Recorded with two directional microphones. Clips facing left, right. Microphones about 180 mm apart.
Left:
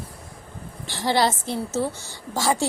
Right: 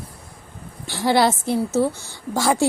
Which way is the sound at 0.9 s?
10° right (ahead or behind).